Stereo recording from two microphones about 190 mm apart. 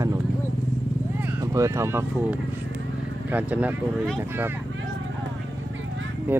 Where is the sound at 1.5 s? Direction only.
15° right (ahead or behind).